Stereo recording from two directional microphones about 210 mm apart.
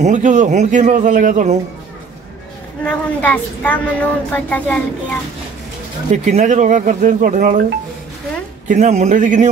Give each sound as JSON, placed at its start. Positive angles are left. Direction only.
{"t": 0.0, "sound": "a man's voice", "side_deg": -35}
{"t": 2.8, "sound": "a woman's voice", "side_deg": 5}
{"t": 6.2, "sound": "a man's voice", "side_deg": -35}
{"t": 8.6, "sound": "a man's voice", "side_deg": -35}